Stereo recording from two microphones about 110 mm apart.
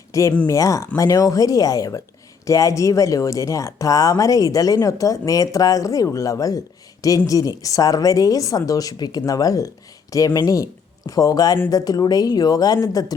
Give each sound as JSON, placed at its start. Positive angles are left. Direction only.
{"t": 0.1, "sound": "a woman's voice", "side_deg": 30}